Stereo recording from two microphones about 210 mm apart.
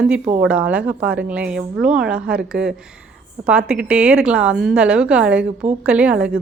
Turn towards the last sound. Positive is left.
turn(degrees=-5)  # may be behind; listen again after turning